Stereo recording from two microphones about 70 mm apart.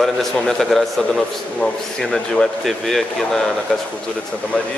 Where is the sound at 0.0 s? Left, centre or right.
Centre.